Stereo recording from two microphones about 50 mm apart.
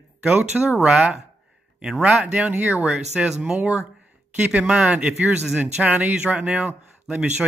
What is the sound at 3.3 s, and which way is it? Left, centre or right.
Speech, centre.